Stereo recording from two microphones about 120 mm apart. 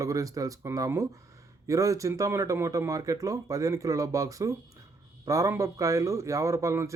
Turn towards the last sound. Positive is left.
turn(degrees=-25)  # may be behind; listen again after turning